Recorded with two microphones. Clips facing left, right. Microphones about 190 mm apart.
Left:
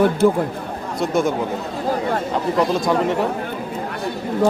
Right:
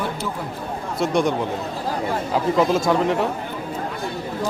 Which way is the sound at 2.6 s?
Centre (ahead or behind).